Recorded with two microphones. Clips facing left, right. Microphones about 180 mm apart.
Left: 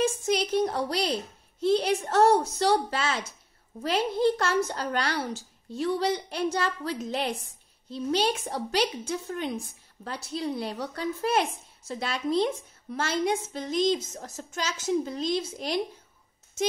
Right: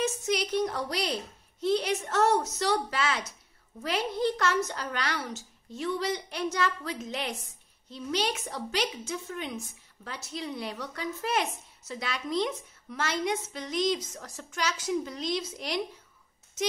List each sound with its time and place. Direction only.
0.6 s a woman's voice: 30° left (ahead or behind)